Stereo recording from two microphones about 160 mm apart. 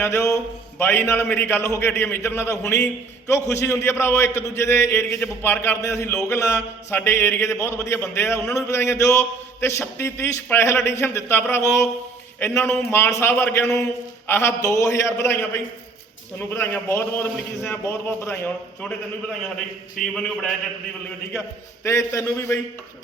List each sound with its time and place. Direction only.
0.0 s a man's voice: 15° left (ahead or behind)
21.8 s a man's voice: 20° left (ahead or behind)